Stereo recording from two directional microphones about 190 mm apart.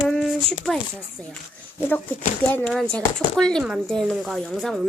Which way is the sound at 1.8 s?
10° left (ahead or behind).